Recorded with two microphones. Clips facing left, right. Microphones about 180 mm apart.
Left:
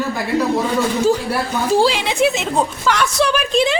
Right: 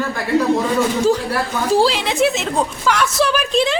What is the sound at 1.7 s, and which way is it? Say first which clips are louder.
A woman's voice: even; centre (ahead or behind).